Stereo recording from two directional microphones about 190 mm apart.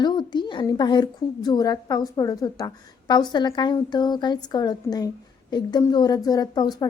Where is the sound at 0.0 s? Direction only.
25° left (ahead or behind).